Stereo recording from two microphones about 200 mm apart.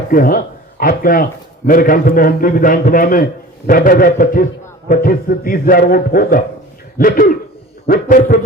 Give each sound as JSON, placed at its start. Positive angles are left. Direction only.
{"t": 0.1, "sound": "a man's voice", "side_deg": 45}